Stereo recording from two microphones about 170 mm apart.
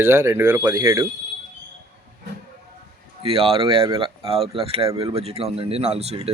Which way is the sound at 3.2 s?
35° right (ahead or behind).